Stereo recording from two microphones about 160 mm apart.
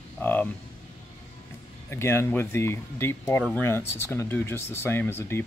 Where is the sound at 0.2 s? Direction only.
10° left (ahead or behind).